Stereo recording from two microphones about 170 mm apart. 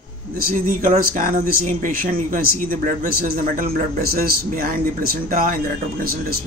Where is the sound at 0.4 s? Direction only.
55° right (ahead or behind).